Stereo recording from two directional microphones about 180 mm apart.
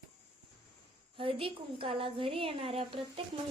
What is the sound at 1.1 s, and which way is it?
A woman's voice, 30° right (ahead or behind).